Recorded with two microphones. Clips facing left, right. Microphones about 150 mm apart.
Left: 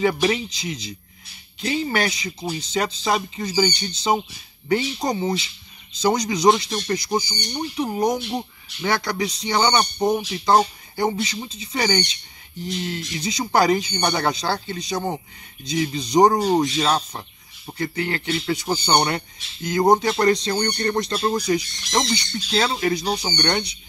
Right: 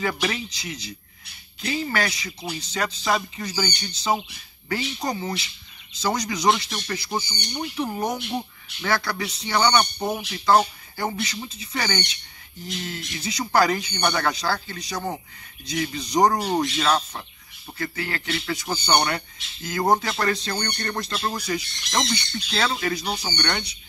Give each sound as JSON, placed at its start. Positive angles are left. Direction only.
{"t": 0.0, "sound": "speech", "side_deg": 25}
{"t": 13.2, "sound": "speech", "side_deg": 20}